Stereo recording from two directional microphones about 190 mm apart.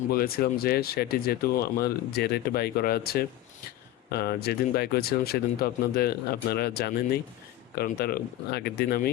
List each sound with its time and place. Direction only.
0.1 s speech: 50° left (ahead or behind)